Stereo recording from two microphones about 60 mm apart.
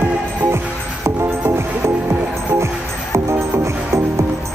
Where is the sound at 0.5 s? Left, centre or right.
Right.